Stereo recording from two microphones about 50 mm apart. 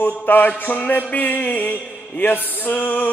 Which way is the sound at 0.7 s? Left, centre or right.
Left.